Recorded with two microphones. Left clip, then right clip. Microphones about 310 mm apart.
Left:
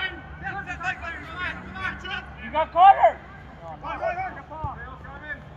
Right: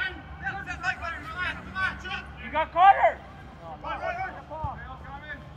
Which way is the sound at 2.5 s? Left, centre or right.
Left.